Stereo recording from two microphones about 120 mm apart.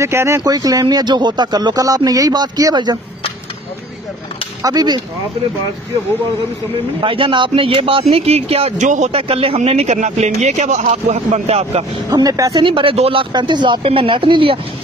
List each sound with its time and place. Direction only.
0.0 s speech: 20° right (ahead or behind); by 3.0 s 40° right (ahead or behind)
4.6 s speech: 35° right (ahead or behind)
7.0 s speech: 45° right (ahead or behind); by 9.1 s 85° right
9.1 s speech: 55° right (ahead or behind)
12.1 s speech: 30° right (ahead or behind)
12.6 s speech: 45° right (ahead or behind)